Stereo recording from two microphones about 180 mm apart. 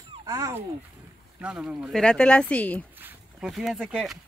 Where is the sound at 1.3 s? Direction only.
5° right (ahead or behind).